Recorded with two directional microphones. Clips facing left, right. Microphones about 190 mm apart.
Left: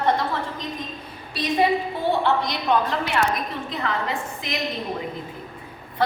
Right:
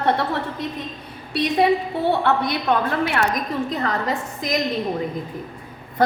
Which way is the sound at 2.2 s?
60° right (ahead or behind).